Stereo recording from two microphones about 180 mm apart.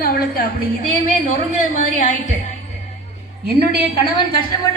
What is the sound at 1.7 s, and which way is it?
Speech, 45° left (ahead or behind).